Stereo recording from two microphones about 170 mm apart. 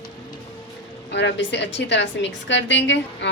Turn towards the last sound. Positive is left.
turn(degrees=90)